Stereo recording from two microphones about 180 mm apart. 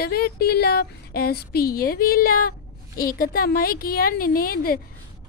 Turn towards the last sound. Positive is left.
turn(degrees=55)  # may be behind; listen again after turning